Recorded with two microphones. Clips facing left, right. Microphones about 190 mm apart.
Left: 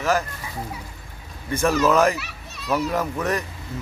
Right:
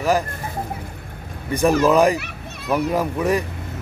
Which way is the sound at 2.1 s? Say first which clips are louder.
Right 5 dB; 55° right (ahead or behind).